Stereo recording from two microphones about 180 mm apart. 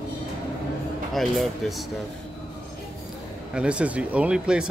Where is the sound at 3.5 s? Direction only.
5° right (ahead or behind).